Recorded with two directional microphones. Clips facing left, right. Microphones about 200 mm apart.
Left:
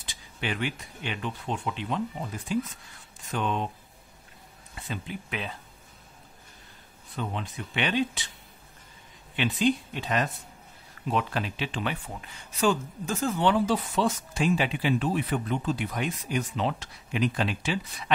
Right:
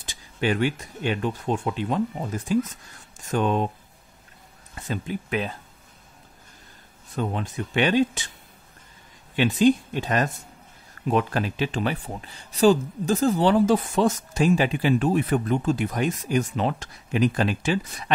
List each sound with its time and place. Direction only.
0.0 s speech: 45° right (ahead or behind)
4.8 s speech: 45° right (ahead or behind)
7.2 s speech: 45° right (ahead or behind)
9.3 s speech: 45° right (ahead or behind)